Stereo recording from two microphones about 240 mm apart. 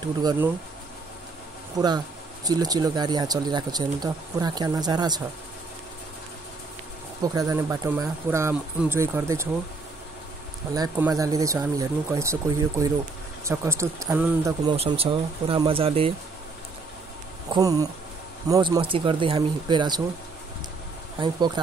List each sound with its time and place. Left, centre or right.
0.2 s speech: centre
1.8 s speech: centre
7.3 s speech: centre
10.7 s speech: centre
17.5 s speech: centre
21.2 s speech: centre